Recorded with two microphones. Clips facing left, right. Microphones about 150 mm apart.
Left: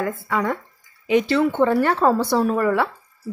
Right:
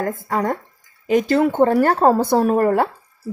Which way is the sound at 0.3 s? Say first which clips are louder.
Right 2 dB; 40° right (ahead or behind).